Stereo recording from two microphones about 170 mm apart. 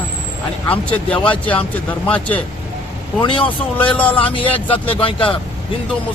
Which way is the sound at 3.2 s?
30° left (ahead or behind).